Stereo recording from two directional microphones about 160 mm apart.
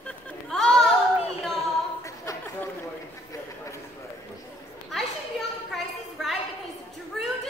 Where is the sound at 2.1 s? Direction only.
20° left (ahead or behind).